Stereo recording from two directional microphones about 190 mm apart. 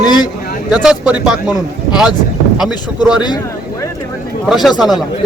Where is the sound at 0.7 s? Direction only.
5° right (ahead or behind).